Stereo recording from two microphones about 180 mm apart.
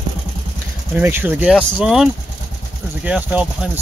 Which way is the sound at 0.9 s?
10° right (ahead or behind).